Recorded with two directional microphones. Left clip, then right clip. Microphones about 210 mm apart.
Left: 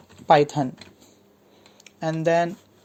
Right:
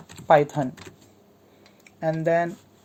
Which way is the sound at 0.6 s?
30° left (ahead or behind).